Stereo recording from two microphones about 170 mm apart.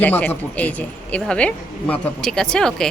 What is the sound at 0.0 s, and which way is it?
A woman's voice, 10° left (ahead or behind).